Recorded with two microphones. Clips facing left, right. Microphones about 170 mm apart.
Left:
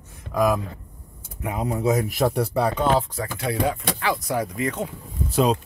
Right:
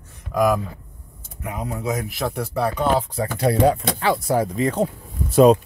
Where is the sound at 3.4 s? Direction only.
35° right (ahead or behind).